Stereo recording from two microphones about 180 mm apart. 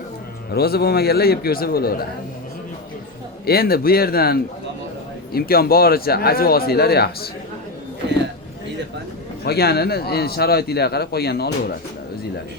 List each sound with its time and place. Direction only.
0.5 s speech: 60° left (ahead or behind)
3.4 s speech: 55° left (ahead or behind)
9.4 s speech: 60° left (ahead or behind)